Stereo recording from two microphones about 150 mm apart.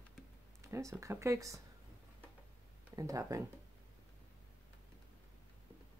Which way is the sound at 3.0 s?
20° right (ahead or behind).